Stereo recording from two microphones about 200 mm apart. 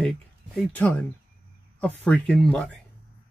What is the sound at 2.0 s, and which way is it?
Speech, 5° left (ahead or behind).